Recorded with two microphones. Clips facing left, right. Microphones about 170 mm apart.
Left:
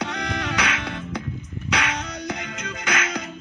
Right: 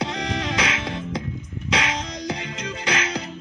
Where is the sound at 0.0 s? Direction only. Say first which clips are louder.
Right 1 dB; 30° right (ahead or behind).